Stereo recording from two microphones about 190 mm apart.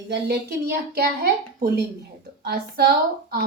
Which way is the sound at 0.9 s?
50° right (ahead or behind).